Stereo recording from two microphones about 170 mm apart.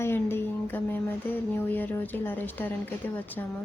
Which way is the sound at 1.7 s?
10° left (ahead or behind).